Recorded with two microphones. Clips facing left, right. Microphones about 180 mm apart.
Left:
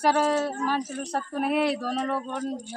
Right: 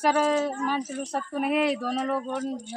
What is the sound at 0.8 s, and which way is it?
A man's voice, 5° right (ahead or behind).